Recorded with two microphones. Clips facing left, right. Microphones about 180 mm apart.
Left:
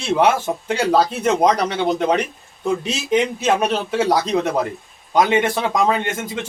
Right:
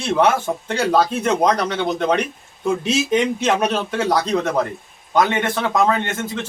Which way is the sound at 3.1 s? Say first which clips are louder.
Left 3 dB; 5° left (ahead or behind).